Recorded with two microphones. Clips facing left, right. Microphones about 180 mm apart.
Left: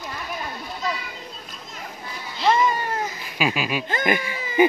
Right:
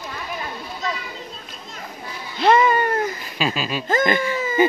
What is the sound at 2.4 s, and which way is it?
Cat, 60° right (ahead or behind).